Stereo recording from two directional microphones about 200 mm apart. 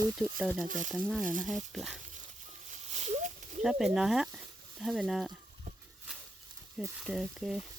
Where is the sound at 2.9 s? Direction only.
35° right (ahead or behind).